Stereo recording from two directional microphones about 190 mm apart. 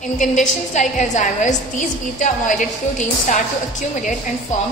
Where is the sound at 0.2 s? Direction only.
40° left (ahead or behind).